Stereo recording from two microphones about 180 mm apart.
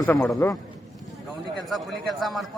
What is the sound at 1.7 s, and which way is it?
Speech, centre (ahead or behind).